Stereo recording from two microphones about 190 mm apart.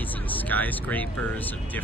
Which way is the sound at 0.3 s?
10° left (ahead or behind).